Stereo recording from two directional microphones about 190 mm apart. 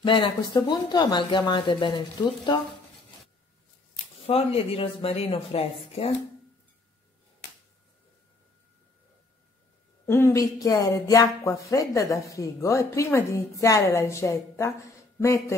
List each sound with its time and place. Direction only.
0.0 s speech: 25° left (ahead or behind)
4.3 s speech: 30° left (ahead or behind)
10.0 s speech: 15° left (ahead or behind)